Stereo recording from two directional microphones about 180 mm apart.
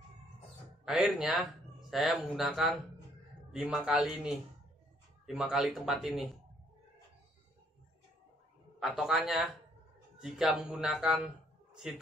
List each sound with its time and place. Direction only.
0.8 s speech: centre (ahead or behind)
8.7 s a man's voice: centre (ahead or behind)